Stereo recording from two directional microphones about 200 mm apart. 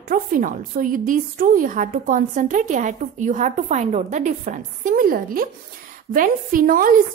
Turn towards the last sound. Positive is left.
turn(degrees=-45)  # may be behind; listen again after turning